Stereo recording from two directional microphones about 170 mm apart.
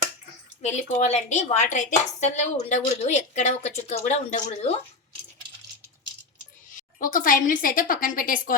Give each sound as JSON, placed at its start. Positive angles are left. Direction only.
{"t": 0.6, "sound": "a woman's voice", "side_deg": 40}
{"t": 6.7, "sound": "a woman's voice", "side_deg": 50}